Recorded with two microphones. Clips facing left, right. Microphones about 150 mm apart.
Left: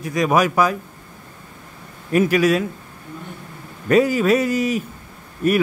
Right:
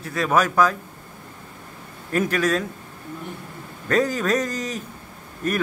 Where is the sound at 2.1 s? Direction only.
10° left (ahead or behind).